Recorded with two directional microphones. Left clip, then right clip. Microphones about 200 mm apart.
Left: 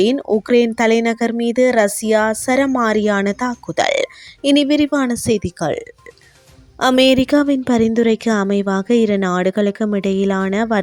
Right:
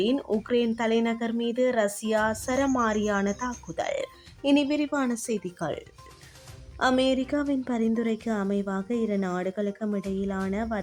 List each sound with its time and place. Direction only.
0.0 s speech: 35° left (ahead or behind)